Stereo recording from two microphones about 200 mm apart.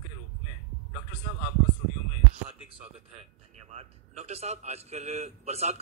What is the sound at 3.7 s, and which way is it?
A man's voice, 35° right (ahead or behind).